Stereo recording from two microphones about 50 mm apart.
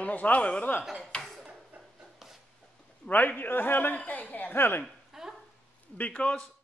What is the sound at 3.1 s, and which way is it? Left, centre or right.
Speech, left.